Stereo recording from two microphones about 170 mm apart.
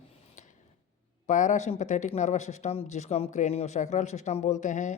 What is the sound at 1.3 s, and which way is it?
Speech, 45° left (ahead or behind).